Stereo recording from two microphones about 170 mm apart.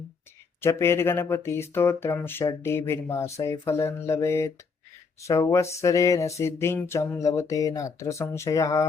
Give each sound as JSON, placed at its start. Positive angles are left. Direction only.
{"t": 0.6, "sound": "speech", "side_deg": 15}